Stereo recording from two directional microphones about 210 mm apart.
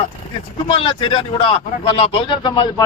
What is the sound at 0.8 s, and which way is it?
A man's voice, 25° left (ahead or behind).